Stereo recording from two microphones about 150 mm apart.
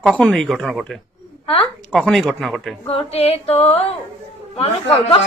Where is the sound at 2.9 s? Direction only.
40° left (ahead or behind).